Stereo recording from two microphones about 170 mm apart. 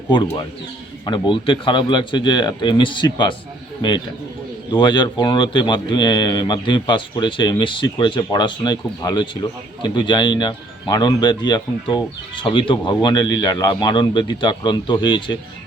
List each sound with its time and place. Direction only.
1.0 s a man's voice: 30° left (ahead or behind)